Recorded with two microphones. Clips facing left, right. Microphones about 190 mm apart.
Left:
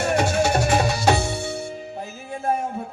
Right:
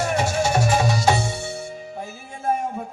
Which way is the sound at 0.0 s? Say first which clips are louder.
Left 2 dB; 60° left (ahead or behind).